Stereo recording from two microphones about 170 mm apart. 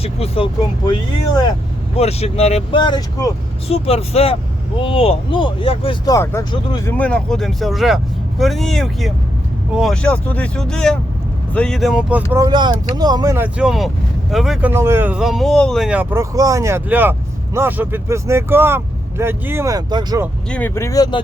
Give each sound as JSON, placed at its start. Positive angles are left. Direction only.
{"t": 0.0, "sound": "speech", "side_deg": 35}
{"t": 0.9, "sound": "speech", "side_deg": 25}
{"t": 2.0, "sound": "speech", "side_deg": 40}
{"t": 3.7, "sound": "speech", "side_deg": 35}
{"t": 6.1, "sound": "speech", "side_deg": 20}
{"t": 6.9, "sound": "speech", "side_deg": 5}
{"t": 12.4, "sound": "speech", "side_deg": -25}
{"t": 14.7, "sound": "speech", "side_deg": -15}
{"t": 16.3, "sound": "speech", "side_deg": -20}
{"t": 20.5, "sound": "speech", "side_deg": 10}